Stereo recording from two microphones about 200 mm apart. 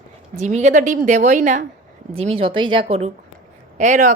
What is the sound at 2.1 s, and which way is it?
Speech, 30° right (ahead or behind).